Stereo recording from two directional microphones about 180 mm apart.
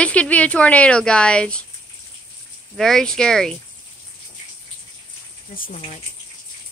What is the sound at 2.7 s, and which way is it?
Speech, centre (ahead or behind).